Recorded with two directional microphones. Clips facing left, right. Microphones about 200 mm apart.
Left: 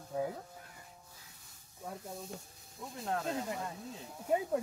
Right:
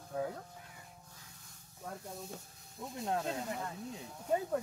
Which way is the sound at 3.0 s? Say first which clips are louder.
Right 1 dB; 20° right (ahead or behind).